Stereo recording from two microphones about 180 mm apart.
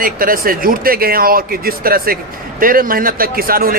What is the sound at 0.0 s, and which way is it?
Speech, 50° right (ahead or behind).